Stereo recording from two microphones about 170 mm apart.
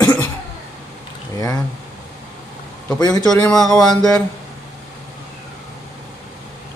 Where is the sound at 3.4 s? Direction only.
5° left (ahead or behind).